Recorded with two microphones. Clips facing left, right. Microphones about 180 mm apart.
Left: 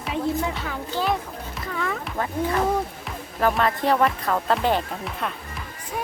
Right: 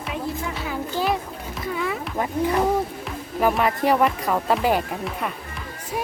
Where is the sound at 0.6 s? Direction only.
10° right (ahead or behind).